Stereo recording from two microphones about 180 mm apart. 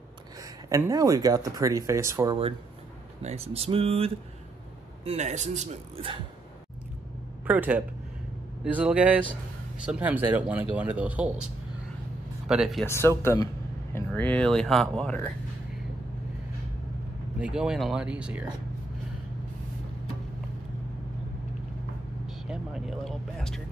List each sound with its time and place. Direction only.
0.4 s speech: 20° right (ahead or behind)
3.2 s speech: 35° right (ahead or behind)
7.4 s speech: 10° right (ahead or behind)
12.4 s speech: centre (ahead or behind)
12.8 s speech: 15° left (ahead or behind)
17.4 s speech: 5° right (ahead or behind)
22.5 s vehicle: centre (ahead or behind)